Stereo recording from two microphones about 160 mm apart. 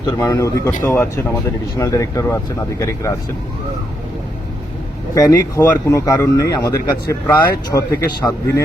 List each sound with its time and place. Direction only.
0.2 s speech: 20° left (ahead or behind)
5.1 s speech: 20° left (ahead or behind)